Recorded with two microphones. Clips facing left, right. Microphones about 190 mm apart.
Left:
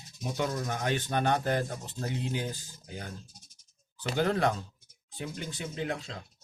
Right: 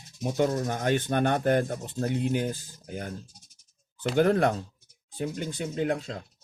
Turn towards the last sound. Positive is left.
turn(degrees=-45)  # may be behind; listen again after turning